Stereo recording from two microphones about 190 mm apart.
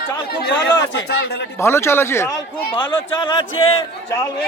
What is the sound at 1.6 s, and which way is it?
Speech, 15° left (ahead or behind).